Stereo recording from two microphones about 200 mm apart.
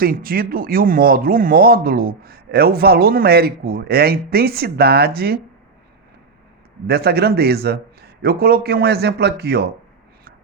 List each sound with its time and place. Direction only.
0.0 s speech: 45° right (ahead or behind)
6.8 s speech: 50° right (ahead or behind)